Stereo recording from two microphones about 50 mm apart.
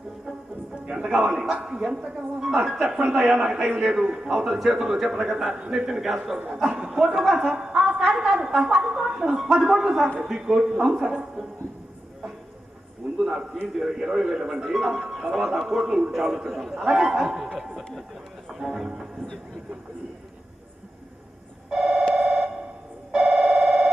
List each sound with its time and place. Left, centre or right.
0.9 s a man's voice: right
1.3 s a man's voice: centre
4.4 s a man's voice: centre
7.5 s a woman's voice: centre
13.1 s a sound: centre
13.7 s a man's voice: centre
18.6 s speech: centre
21.7 s telephone bell ringing: centre
23.1 s a sound: centre